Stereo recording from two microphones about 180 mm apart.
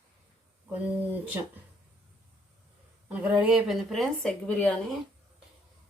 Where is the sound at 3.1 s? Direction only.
5° right (ahead or behind).